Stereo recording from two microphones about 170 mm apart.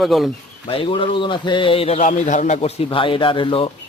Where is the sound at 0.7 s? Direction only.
30° left (ahead or behind).